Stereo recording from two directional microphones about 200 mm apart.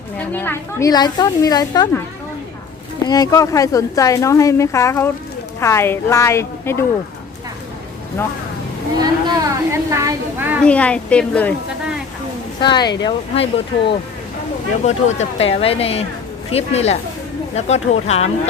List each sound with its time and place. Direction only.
0.2 s a woman's voice: 10° left (ahead or behind)
3.1 s a woman's voice: 15° left (ahead or behind)
9.0 s a woman's voice: 20° right (ahead or behind)
10.6 s a woman's voice: 5° left (ahead or behind)
12.5 s a woman's voice: 20° left (ahead or behind)